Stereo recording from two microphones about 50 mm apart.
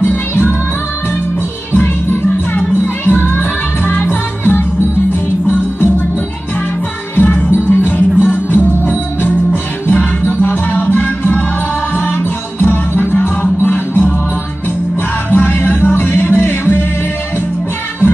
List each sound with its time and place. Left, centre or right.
0.0 s music: left
1.7 s music: left
7.2 s music: left
7.5 s music: left